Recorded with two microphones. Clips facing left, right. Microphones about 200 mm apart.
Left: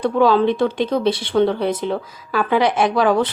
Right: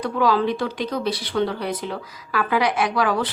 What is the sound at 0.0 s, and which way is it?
Speech, 25° left (ahead or behind).